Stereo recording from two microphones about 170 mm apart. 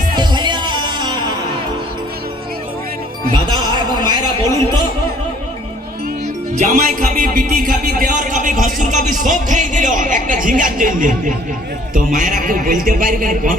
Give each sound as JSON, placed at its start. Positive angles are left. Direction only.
{"t": 0.2, "sound": "music", "side_deg": -25}
{"t": 3.3, "sound": "a sound", "side_deg": -25}
{"t": 6.6, "sound": "a man's voice", "side_deg": -50}